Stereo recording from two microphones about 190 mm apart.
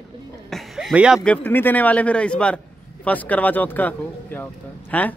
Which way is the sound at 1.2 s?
10° left (ahead or behind).